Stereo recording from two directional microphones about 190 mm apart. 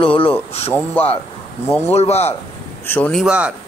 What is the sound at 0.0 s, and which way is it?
Speech, 30° left (ahead or behind).